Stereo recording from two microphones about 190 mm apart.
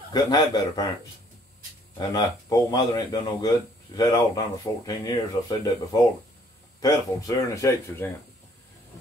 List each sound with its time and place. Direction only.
0.1 s speech: 20° left (ahead or behind)
2.0 s speech: 20° left (ahead or behind)
6.8 s speech: 20° left (ahead or behind)